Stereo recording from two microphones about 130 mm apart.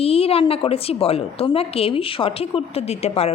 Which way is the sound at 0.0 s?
50° left (ahead or behind).